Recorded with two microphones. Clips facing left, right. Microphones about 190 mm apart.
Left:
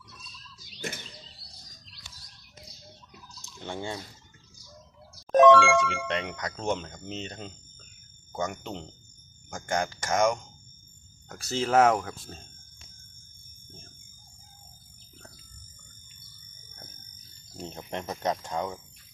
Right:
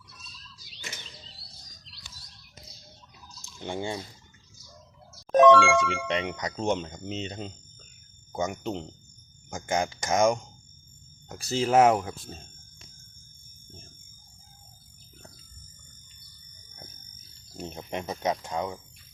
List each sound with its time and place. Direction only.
1.9 s bird: 50° left (ahead or behind)
3.4 s fowl: 15° right (ahead or behind)
5.3 s music: centre (ahead or behind)
6.3 s speech: 20° right (ahead or behind)
17.6 s speech: 10° right (ahead or behind)